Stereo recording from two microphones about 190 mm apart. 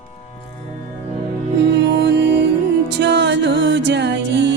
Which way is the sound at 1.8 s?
65° right (ahead or behind).